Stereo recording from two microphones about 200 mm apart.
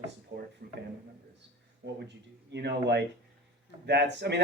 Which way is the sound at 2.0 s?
60° right (ahead or behind).